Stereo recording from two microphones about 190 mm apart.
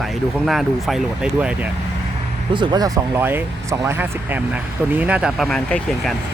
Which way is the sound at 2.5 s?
25° right (ahead or behind).